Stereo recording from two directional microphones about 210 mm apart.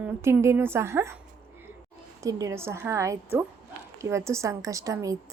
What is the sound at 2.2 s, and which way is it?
A woman's voice, 15° right (ahead or behind).